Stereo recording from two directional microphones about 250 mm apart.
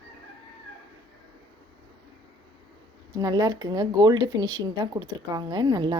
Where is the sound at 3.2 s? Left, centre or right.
Centre.